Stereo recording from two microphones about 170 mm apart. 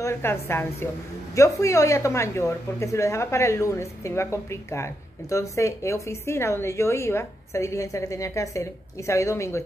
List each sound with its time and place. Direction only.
0.0 s a woman's voice: 15° left (ahead or behind)